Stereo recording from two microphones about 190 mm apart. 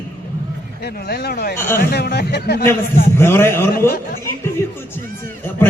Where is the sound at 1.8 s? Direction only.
55° left (ahead or behind).